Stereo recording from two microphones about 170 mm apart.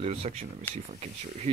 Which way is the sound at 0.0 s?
40° right (ahead or behind).